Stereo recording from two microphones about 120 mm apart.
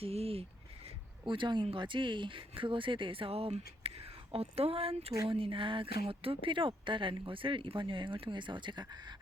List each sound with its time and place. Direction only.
0.0 s speech: 55° right (ahead or behind)
0.9 s a sound: 45° right (ahead or behind)
1.6 s speech: 45° right (ahead or behind)